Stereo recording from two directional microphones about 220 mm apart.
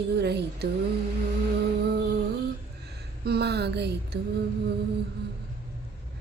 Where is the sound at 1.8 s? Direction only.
50° right (ahead or behind).